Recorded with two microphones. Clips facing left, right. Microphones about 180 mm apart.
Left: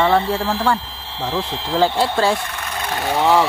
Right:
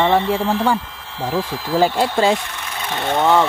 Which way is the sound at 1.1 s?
25° left (ahead or behind).